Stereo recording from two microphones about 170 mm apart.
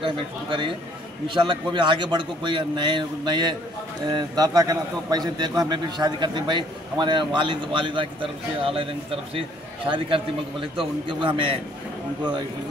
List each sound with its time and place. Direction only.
0.0 s a man's voice: 30° right (ahead or behind)
9.8 s a man's voice: 30° right (ahead or behind)